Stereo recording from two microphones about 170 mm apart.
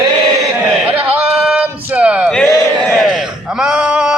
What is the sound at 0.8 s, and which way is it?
Sheep, 10° right (ahead or behind).